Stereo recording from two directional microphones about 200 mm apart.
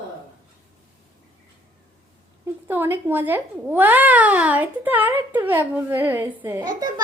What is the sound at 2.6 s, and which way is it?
Speech, 10° right (ahead or behind).